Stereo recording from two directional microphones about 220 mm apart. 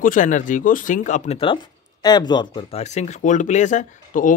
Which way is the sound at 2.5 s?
30° left (ahead or behind).